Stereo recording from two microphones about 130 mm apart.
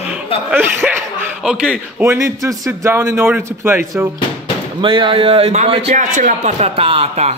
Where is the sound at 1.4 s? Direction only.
5° right (ahead or behind).